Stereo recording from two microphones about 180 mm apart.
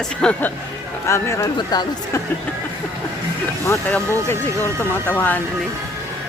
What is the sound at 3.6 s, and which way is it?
Speech, 10° left (ahead or behind).